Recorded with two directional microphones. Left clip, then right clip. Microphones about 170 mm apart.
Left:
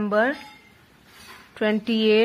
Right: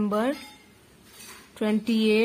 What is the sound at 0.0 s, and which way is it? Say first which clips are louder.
Speech: left 5 dB; 20° right (ahead or behind).